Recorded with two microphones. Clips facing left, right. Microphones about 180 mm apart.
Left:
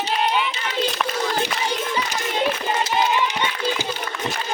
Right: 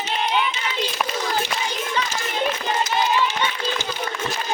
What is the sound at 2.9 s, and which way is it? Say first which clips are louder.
Clapping: even; 20° left (ahead or behind).